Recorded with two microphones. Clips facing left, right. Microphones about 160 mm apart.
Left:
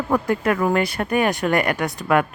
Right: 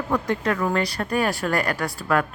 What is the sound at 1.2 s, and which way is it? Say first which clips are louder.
Speech: left 4 dB; 20° left (ahead or behind).